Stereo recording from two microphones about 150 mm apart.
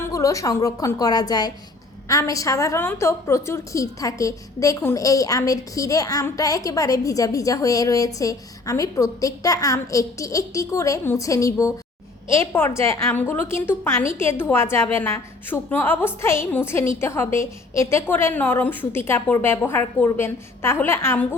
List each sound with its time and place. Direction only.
0.0 s a woman's voice: 20° left (ahead or behind)